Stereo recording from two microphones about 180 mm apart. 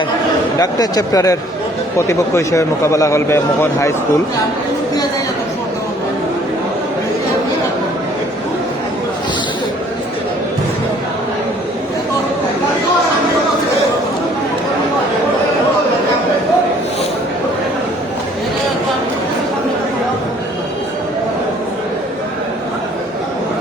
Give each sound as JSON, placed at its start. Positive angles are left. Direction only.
{"t": 0.6, "sound": "a man's voice", "side_deg": 20}